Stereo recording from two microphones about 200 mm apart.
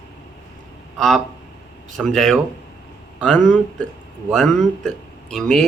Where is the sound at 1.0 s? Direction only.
Centre (ahead or behind).